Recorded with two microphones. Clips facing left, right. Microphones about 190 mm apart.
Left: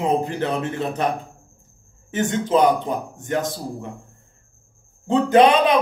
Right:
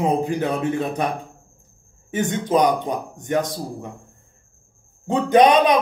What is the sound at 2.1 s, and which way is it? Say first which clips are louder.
Speech: even; 15° right (ahead or behind).